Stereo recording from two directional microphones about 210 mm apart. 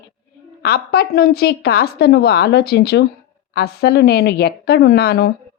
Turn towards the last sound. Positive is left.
turn(degrees=50)  # may be behind; listen again after turning